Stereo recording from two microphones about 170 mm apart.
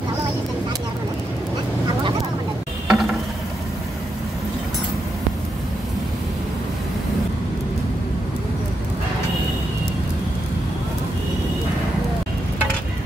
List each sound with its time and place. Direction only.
2.9 s mechanisms: centre (ahead or behind)